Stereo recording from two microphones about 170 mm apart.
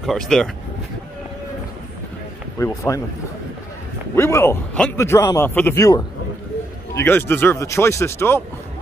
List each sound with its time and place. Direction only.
0.0 s speech: centre (ahead or behind)
2.6 s a man's voice: 15° left (ahead or behind)
4.1 s a man's voice: 15° left (ahead or behind)